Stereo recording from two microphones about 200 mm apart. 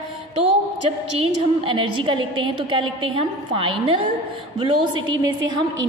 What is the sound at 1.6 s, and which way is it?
A woman's voice, 25° right (ahead or behind).